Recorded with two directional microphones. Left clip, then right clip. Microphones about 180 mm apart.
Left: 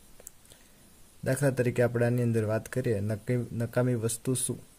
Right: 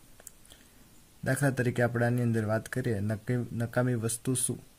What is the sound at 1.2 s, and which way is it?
Speech, 30° left (ahead or behind).